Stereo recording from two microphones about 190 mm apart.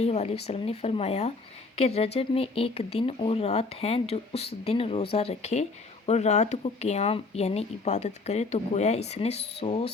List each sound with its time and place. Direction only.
0.0 s speech: 35° left (ahead or behind)